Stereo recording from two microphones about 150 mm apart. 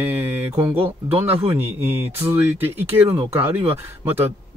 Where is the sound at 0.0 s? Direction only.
15° right (ahead or behind).